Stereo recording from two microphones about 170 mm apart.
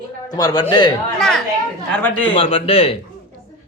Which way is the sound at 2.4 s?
35° left (ahead or behind).